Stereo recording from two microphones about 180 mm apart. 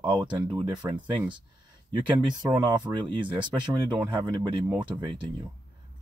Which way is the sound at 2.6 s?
25° right (ahead or behind).